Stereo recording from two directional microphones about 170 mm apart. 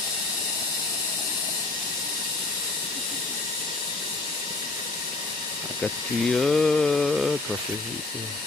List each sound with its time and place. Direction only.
6.3 s mantra: centre (ahead or behind)